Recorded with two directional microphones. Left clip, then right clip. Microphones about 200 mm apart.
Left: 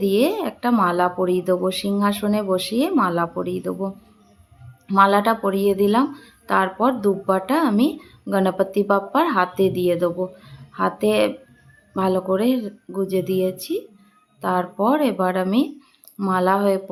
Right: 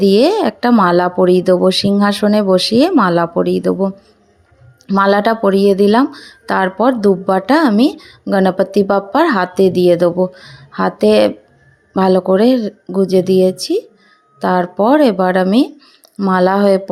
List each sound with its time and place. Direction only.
0.0 s speech: 35° right (ahead or behind)